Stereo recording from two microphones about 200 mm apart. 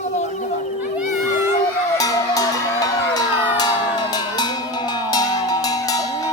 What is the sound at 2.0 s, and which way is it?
Cowbell, 15° left (ahead or behind).